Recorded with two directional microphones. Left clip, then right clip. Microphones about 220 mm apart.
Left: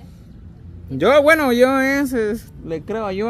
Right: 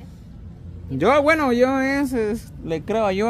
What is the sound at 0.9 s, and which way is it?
Speech, 10° left (ahead or behind).